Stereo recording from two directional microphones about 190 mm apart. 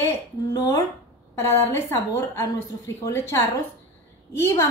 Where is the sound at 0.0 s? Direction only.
15° left (ahead or behind).